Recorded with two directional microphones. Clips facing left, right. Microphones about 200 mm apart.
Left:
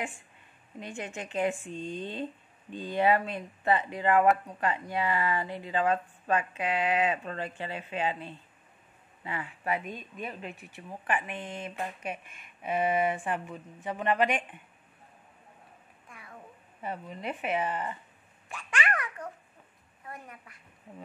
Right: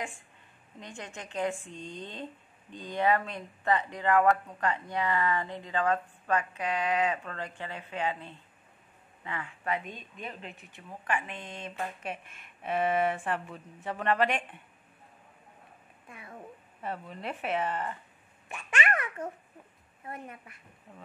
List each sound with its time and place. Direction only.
0.9 s speech: 20° left (ahead or behind)
1.7 s speech: 15° right (ahead or behind)
3.0 s speech: 15° left (ahead or behind)
9.8 s a woman's voice: 45° left (ahead or behind)
11.1 s speech: 15° left (ahead or behind)
16.8 s speech: centre (ahead or behind)
18.5 s a sound: 25° right (ahead or behind)
20.1 s a woman's voice: 25° right (ahead or behind)